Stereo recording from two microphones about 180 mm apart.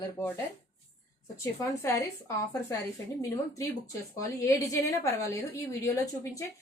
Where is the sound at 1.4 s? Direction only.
15° left (ahead or behind).